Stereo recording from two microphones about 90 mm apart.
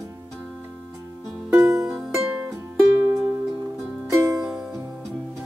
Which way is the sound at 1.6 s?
30° right (ahead or behind).